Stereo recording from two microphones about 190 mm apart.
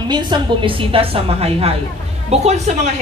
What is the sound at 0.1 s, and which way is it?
A woman's voice, 25° right (ahead or behind).